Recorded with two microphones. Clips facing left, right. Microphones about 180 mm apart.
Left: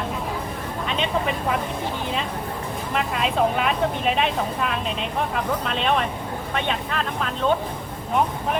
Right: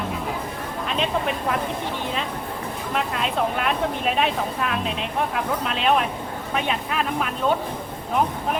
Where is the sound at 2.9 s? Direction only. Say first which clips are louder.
Left 2 dB; centre (ahead or behind).